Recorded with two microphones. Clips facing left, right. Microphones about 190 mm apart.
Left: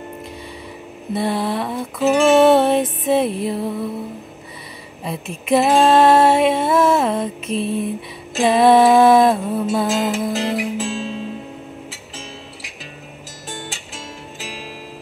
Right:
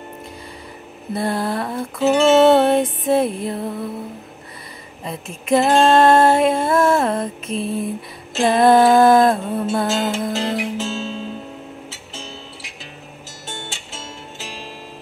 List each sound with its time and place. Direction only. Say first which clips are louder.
1.1 s female singing: left 1 dB; centre (ahead or behind)
2.2 s music: even; 25° right (ahead or behind)
2.5 s female singing: even; centre (ahead or behind)
5.0 s female singing: left 3 dB; 5° left (ahead or behind)
10.2 s music: left 1 dB; 5° left (ahead or behind)
10.8 s music: left 1 dB; 25° right (ahead or behind)